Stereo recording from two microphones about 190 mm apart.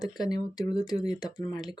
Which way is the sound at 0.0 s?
20° left (ahead or behind).